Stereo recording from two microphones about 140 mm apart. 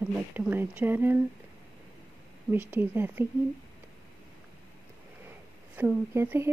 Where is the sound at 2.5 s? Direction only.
15° right (ahead or behind).